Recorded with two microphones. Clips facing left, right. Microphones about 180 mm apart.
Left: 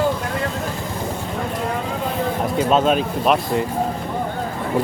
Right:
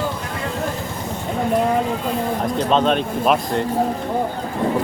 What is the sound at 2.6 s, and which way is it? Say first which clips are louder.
Speech: left 1 dB; 5° left (ahead or behind).